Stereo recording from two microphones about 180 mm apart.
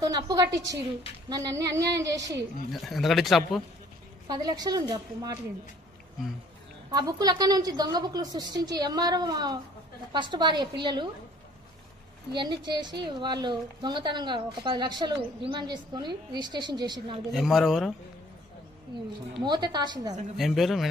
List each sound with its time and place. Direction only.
0.0 s a woman's voice: 20° right (ahead or behind)
2.7 s speech: centre (ahead or behind)
4.3 s a woman's voice: 20° right (ahead or behind)
6.9 s a woman's voice: 20° right (ahead or behind)
12.4 s a woman's voice: 25° right (ahead or behind)
17.3 s speech: centre (ahead or behind)
19.4 s a woman's voice: 25° right (ahead or behind)
20.3 s speech: centre (ahead or behind)